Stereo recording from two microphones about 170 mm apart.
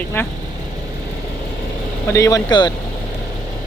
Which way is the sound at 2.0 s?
15° left (ahead or behind).